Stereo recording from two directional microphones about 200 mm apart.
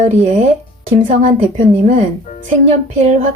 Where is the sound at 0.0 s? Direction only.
35° right (ahead or behind).